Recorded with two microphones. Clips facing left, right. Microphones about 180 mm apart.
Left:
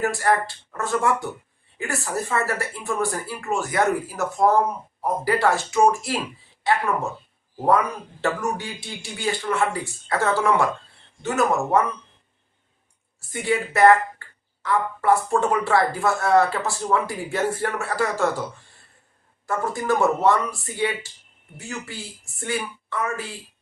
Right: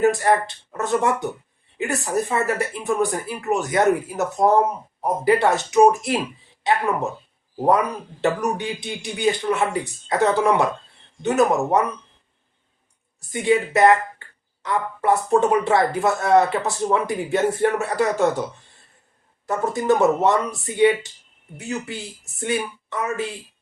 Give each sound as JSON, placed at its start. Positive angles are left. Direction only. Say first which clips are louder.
{"t": 0.0, "sound": "speech", "louder": "right 4 dB", "side_deg": -20}
{"t": 13.3, "sound": "speech", "louder": "right 5 dB", "side_deg": -20}
{"t": 19.5, "sound": "speech", "louder": "right 4 dB", "side_deg": -20}